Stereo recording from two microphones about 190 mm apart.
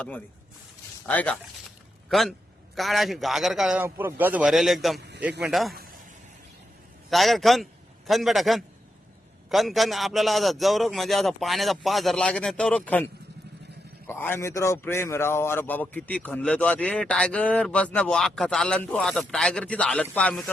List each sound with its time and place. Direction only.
1.0 s a man's voice: 5° left (ahead or behind)
4.9 s a sound: 60° right (ahead or behind)
5.4 s a man's voice: centre (ahead or behind)
7.1 s a man's voice: centre (ahead or behind)
14.1 s a man's voice: 10° left (ahead or behind)